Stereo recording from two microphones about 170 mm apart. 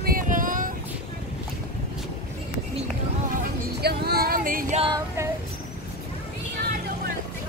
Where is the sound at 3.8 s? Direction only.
70° right (ahead or behind).